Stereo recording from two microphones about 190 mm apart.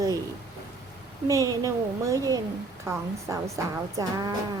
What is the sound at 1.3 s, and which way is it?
Speech, 15° right (ahead or behind).